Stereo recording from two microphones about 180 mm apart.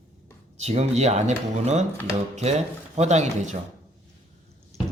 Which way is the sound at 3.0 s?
40° right (ahead or behind).